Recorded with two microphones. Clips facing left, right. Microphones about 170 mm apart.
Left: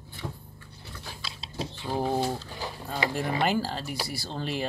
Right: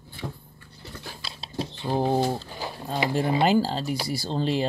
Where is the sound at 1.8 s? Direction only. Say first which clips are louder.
Right 4 dB; 20° right (ahead or behind).